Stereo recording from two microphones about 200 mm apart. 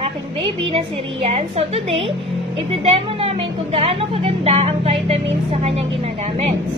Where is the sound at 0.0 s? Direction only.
25° right (ahead or behind).